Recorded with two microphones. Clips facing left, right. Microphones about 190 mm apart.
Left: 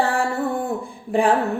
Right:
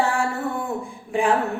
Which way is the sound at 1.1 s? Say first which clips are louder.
Left 3 dB; 35° left (ahead or behind).